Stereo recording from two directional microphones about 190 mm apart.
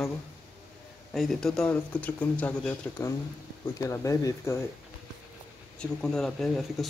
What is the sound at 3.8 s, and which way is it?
Speech, 15° left (ahead or behind).